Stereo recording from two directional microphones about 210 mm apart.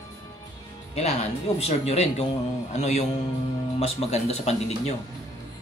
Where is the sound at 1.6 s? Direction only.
30° left (ahead or behind).